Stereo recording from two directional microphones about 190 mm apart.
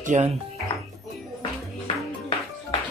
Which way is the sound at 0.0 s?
40° right (ahead or behind).